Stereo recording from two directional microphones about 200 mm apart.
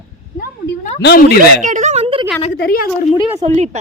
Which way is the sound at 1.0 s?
55° left (ahead or behind).